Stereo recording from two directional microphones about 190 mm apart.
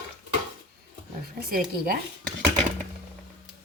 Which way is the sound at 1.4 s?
50° right (ahead or behind).